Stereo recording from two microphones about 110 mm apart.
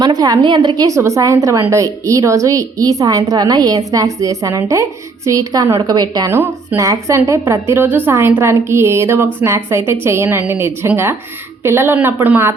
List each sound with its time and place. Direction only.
0.0 s a woman's voice: 35° right (ahead or behind)
6.3 s a woman's voice: 25° right (ahead or behind)